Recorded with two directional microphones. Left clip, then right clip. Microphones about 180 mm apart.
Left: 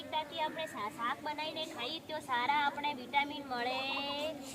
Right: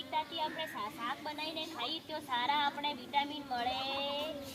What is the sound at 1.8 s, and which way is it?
A woman's voice, 10° right (ahead or behind).